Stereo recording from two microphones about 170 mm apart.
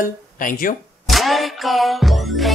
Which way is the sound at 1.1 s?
Centre (ahead or behind).